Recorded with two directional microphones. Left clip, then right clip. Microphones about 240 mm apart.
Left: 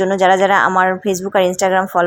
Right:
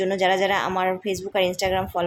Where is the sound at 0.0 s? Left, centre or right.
Centre.